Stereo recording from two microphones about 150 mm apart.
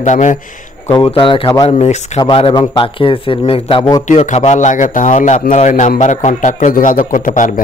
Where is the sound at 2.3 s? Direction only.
35° left (ahead or behind).